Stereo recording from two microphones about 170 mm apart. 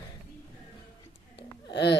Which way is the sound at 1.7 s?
85° left.